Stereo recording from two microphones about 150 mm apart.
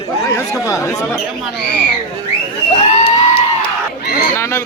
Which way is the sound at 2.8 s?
45° left (ahead or behind).